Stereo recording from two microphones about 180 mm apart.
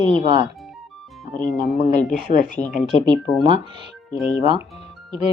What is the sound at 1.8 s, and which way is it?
Speech, 40° left (ahead or behind).